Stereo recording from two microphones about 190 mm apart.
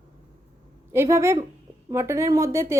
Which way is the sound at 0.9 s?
15° right (ahead or behind).